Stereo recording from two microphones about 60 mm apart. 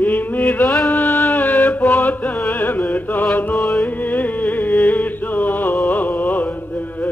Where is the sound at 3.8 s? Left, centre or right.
Left.